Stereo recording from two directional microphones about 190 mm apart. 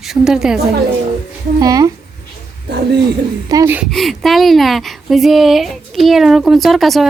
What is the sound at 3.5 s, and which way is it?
Speech, 20° right (ahead or behind).